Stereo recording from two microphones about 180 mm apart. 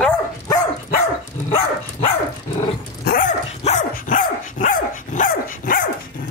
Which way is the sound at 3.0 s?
50° left (ahead or behind).